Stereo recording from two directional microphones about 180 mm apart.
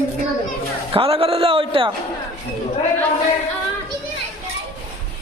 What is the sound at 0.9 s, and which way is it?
Speech, 30° right (ahead or behind).